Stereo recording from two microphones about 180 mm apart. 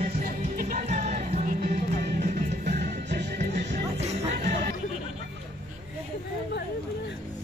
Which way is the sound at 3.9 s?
40° right (ahead or behind).